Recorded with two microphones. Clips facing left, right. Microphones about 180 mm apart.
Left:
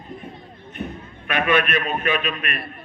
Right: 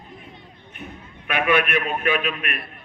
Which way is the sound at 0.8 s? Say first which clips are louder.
Left 7 dB; 65° left (ahead or behind).